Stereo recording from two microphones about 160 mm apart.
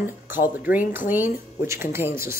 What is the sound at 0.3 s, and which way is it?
Speech, 10° right (ahead or behind).